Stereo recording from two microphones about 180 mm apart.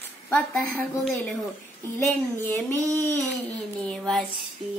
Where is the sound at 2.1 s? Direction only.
10° left (ahead or behind).